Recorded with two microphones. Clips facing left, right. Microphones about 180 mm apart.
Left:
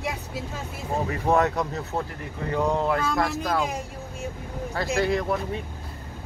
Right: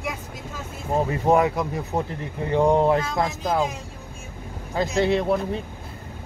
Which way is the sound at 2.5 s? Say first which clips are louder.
Right 6 dB; 30° right (ahead or behind).